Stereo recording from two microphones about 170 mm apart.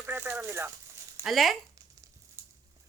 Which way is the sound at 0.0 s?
10° right (ahead or behind).